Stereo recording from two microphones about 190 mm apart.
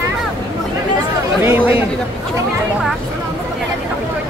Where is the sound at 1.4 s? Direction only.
10° right (ahead or behind).